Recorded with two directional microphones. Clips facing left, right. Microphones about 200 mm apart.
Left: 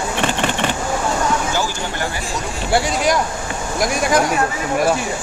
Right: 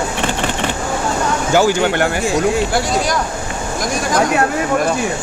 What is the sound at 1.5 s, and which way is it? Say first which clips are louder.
Speech: right 9 dB; 70° right (ahead or behind).